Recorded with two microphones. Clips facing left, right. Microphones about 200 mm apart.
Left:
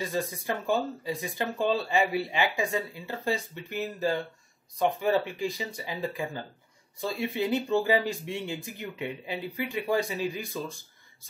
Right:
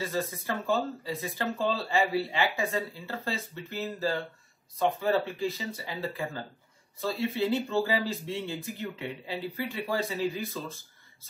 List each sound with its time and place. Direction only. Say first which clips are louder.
0.0 s speech: left 1 dB; 15° left (ahead or behind)